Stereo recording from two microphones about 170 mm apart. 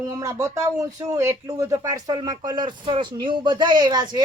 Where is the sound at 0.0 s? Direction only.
20° right (ahead or behind).